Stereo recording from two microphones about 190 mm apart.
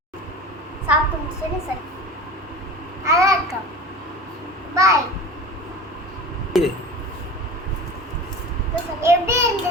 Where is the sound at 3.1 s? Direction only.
15° right (ahead or behind).